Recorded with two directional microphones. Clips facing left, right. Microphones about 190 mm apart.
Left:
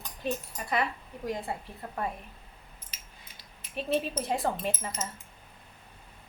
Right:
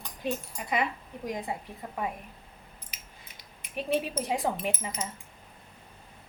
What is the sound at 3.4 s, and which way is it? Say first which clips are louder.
Speech: right 1 dB; 15° right (ahead or behind).